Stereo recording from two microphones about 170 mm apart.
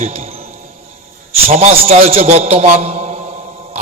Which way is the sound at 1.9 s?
35° right (ahead or behind).